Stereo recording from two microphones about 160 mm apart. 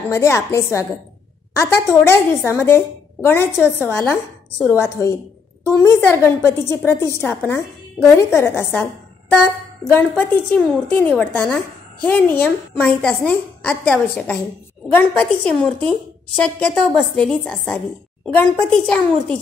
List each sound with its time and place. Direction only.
0.1 s a woman's voice: 15° left (ahead or behind)
1.9 s a woman's voice: 15° left (ahead or behind)
9.9 s a woman's voice: 10° left (ahead or behind)